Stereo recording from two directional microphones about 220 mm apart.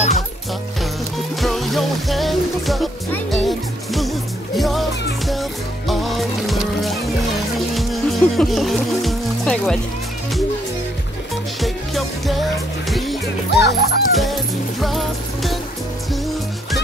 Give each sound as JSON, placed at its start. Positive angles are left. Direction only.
{"t": 1.1, "sound": "music", "side_deg": 0}
{"t": 11.6, "sound": "music", "side_deg": 0}
{"t": 13.5, "sound": "speech", "side_deg": 50}
{"t": 14.1, "sound": "music", "side_deg": 0}